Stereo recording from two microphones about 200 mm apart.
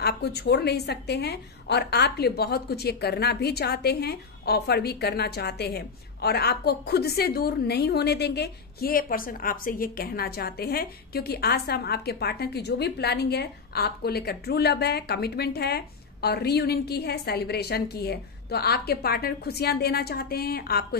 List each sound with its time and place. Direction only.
0.0 s a woman's voice: 55° left (ahead or behind)